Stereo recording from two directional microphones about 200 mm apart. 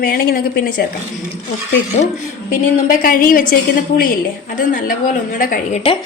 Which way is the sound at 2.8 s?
45° left (ahead or behind).